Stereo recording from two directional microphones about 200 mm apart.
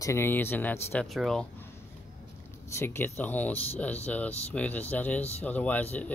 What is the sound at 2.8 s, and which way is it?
A man's voice, 10° left (ahead or behind).